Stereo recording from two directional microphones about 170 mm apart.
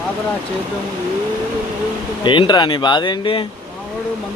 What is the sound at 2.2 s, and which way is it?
Speech, 30° left (ahead or behind).